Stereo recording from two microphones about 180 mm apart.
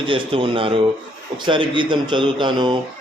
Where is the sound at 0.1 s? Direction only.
30° right (ahead or behind).